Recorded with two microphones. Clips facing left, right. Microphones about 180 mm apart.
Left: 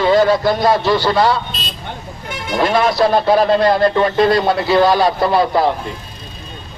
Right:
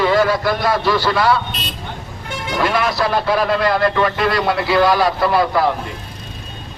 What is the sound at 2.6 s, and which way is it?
A man's voice, 25° left (ahead or behind).